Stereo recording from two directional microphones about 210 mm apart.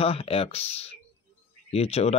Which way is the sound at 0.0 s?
25° left (ahead or behind).